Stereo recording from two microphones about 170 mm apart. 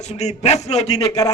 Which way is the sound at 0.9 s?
20° left (ahead or behind).